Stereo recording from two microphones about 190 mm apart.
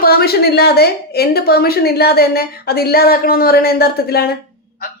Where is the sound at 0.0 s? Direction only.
55° left (ahead or behind).